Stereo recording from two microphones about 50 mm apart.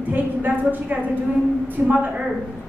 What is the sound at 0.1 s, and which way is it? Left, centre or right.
A woman's voice, right.